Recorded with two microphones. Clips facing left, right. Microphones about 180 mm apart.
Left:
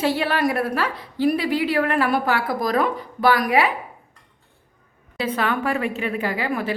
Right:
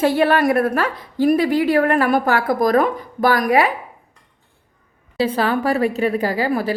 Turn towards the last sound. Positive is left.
turn(degrees=-35)  # may be behind; listen again after turning